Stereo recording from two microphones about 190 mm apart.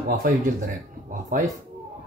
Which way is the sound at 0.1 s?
45° right (ahead or behind).